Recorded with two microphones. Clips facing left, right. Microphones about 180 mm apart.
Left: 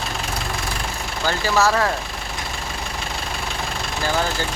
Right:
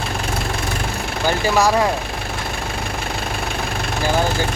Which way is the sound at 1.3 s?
15° right (ahead or behind).